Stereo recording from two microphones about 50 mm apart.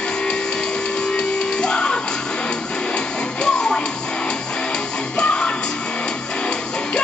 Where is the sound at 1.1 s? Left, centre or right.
Centre.